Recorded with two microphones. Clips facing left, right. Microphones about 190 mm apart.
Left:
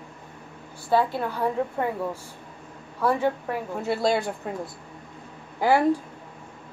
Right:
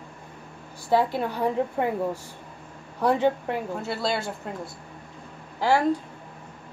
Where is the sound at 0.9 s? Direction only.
20° right (ahead or behind).